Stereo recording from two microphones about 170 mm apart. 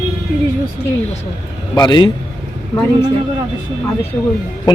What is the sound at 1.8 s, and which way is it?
Speech, 25° left (ahead or behind).